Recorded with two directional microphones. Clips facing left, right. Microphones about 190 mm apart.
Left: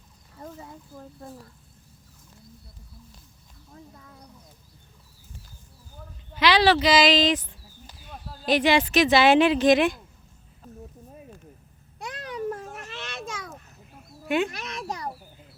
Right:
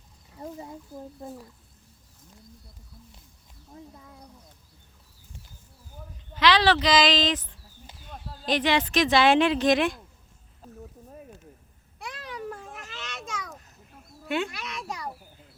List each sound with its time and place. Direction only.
0.3 s speech: 20° right (ahead or behind)
3.9 s speech: 15° right (ahead or behind)
6.3 s speech: 10° left (ahead or behind)
12.0 s babbling: 45° left (ahead or behind)
14.3 s speech: 15° left (ahead or behind)
14.5 s a child's voice: 40° left (ahead or behind)